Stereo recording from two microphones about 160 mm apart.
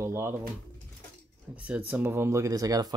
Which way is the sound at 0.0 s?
15° right (ahead or behind).